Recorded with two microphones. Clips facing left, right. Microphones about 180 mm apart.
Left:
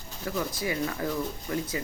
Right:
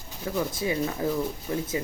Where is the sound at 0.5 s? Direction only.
25° right (ahead or behind).